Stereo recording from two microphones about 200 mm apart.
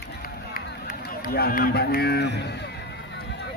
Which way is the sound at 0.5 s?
50° left (ahead or behind).